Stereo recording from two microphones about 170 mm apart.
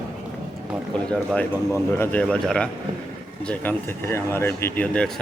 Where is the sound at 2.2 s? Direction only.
5° left (ahead or behind).